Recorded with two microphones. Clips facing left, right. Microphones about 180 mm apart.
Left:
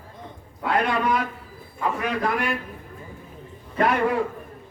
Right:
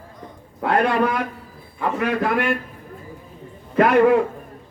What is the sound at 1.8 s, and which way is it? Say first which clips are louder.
Speech: right 3 dB; 55° right (ahead or behind).